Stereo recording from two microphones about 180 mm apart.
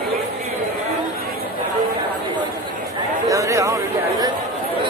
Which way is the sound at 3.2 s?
20° right (ahead or behind).